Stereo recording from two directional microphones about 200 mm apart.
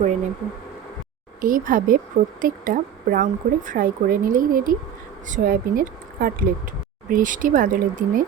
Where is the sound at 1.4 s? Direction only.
40° right (ahead or behind).